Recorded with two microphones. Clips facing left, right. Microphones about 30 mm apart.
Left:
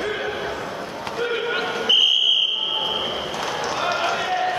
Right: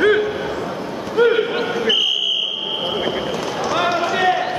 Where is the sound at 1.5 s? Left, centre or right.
Centre.